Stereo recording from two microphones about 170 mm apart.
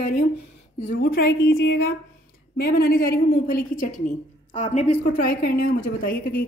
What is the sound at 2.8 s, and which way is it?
Speech, 60° left (ahead or behind).